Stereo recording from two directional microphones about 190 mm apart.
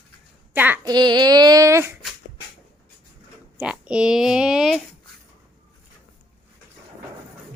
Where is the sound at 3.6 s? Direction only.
5° right (ahead or behind).